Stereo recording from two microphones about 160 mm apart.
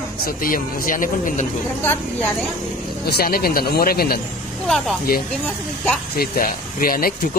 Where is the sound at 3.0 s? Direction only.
70° left (ahead or behind).